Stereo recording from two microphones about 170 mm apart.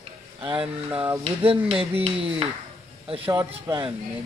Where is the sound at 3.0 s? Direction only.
35° right (ahead or behind).